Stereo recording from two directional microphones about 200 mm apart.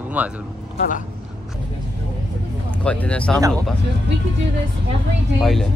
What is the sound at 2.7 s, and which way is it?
Speech, 5° left (ahead or behind).